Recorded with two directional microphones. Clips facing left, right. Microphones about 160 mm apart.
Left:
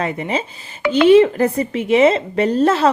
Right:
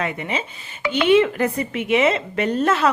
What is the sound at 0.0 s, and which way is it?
A woman's voice, 35° left (ahead or behind).